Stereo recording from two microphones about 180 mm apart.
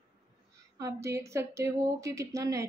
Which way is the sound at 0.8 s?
20° right (ahead or behind).